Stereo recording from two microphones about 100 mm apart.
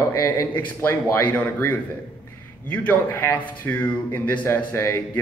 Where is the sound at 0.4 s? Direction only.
25° left (ahead or behind).